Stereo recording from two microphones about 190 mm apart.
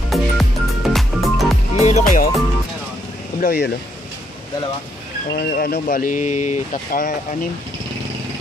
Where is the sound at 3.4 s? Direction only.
60° left (ahead or behind).